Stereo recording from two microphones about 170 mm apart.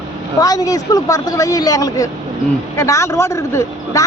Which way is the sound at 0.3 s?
20° left (ahead or behind).